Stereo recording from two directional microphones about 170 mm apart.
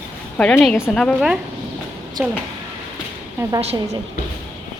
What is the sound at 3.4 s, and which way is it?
Speech, 15° right (ahead or behind).